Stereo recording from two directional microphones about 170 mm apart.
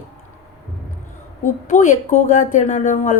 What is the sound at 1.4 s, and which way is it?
Speech, 45° left (ahead or behind).